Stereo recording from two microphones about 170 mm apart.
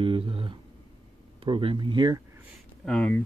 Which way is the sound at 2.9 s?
10° left (ahead or behind).